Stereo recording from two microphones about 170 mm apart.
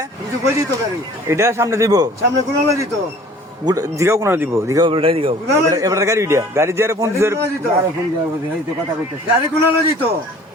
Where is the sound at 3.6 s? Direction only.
20° right (ahead or behind).